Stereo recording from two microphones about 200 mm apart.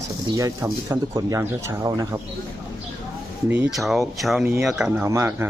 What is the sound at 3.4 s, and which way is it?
Speech, 10° right (ahead or behind).